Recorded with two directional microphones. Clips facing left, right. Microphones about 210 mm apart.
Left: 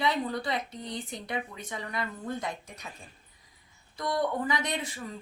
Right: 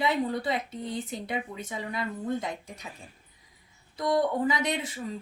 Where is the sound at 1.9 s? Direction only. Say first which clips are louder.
Right 4 dB; 20° right (ahead or behind).